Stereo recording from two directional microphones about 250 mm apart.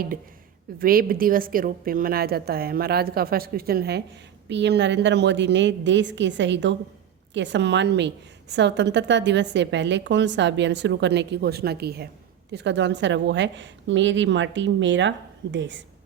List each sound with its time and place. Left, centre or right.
0.8 s a woman's voice: right